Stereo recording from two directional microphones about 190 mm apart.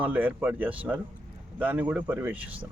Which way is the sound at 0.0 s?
10° right (ahead or behind).